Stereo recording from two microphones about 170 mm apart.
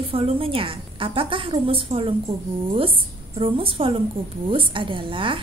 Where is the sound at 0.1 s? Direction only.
35° right (ahead or behind).